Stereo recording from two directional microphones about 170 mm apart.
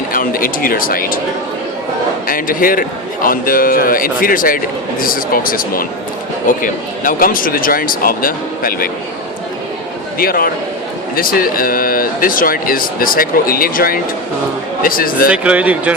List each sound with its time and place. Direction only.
0.1 s a man's voice: 55° left (ahead or behind)
2.2 s a man's voice: 55° left (ahead or behind)
10.2 s a man's voice: 60° left (ahead or behind)
15.3 s speech: 10° right (ahead or behind)